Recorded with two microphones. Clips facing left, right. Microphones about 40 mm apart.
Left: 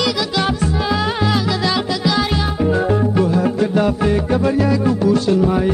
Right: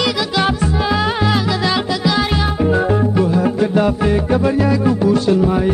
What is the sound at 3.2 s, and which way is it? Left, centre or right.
Music, centre.